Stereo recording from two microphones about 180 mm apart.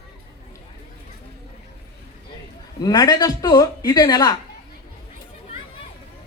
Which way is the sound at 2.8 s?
20° left (ahead or behind).